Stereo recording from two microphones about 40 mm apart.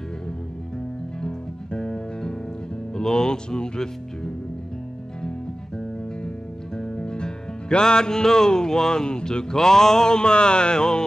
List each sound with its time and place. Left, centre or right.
1.2 s music: left
2.9 s speech: centre
6.8 s music: left